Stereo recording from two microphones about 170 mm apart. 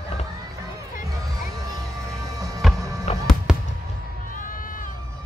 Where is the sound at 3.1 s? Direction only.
40° left (ahead or behind).